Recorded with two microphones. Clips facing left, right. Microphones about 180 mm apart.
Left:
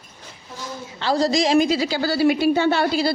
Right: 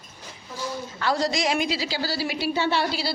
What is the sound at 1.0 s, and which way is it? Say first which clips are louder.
A woman's voice: left 5 dB; 35° left (ahead or behind).